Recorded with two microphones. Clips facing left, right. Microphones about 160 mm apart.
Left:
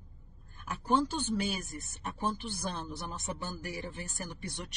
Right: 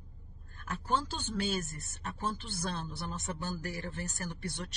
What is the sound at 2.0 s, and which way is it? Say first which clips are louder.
Speech: left 2 dB; 15° left (ahead or behind).